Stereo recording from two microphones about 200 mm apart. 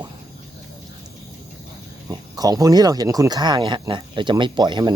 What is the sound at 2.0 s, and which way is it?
Speech, 20° right (ahead or behind).